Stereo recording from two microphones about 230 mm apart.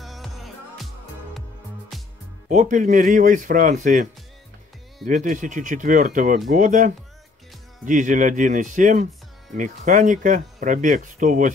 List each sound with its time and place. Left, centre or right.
0.0 s music: centre
1.9 s music: centre
2.5 s speech: right